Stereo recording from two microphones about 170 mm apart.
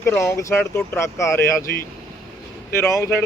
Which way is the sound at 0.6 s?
5° left (ahead or behind).